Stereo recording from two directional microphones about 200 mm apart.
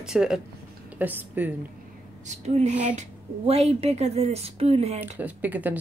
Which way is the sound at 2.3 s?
35° right (ahead or behind).